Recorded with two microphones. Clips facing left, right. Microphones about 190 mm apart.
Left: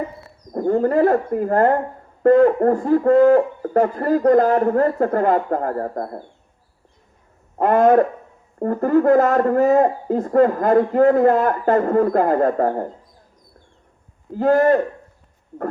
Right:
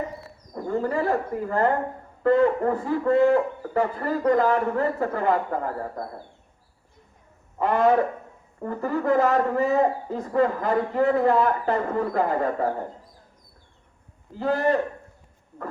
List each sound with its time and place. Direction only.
0.5 s a man's voice: 50° left (ahead or behind)
7.6 s a man's voice: 45° left (ahead or behind)
14.3 s a man's voice: 45° left (ahead or behind)